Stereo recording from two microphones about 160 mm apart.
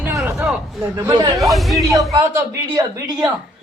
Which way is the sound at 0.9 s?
20° right (ahead or behind).